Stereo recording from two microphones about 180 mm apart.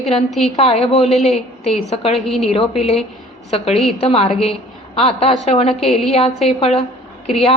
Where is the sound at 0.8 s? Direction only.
35° left (ahead or behind).